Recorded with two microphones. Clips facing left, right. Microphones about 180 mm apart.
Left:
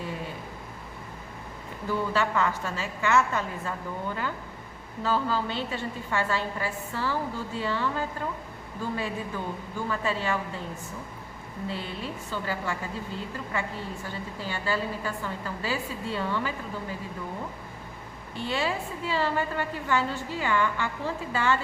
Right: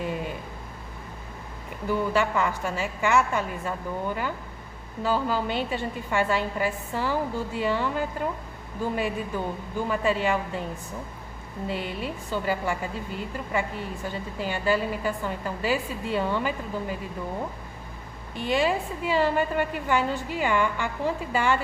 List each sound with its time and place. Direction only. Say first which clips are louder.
1.9 s a woman's voice: right 3 dB; 15° right (ahead or behind)
5.0 s a woman's voice: right 2 dB; 15° right (ahead or behind)
11.7 s a woman's voice: right 5 dB; 15° right (ahead or behind)
18.3 s a woman's voice: right 5 dB; 15° right (ahead or behind)